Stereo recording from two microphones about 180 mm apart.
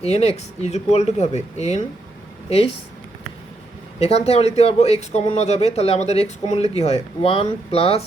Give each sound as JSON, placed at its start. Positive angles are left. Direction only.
{"t": 0.0, "sound": "speech", "side_deg": 35}
{"t": 4.0, "sound": "speech", "side_deg": 35}